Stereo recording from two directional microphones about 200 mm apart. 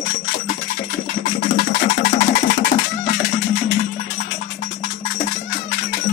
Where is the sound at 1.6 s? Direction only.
45° left (ahead or behind).